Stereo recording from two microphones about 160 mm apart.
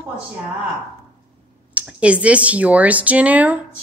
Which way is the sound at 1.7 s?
5° right (ahead or behind).